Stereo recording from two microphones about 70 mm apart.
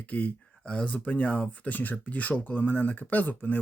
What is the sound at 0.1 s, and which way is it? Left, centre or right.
Speech, centre.